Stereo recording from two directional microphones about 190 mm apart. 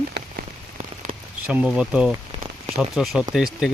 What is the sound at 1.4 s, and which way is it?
Speech, 5° right (ahead or behind).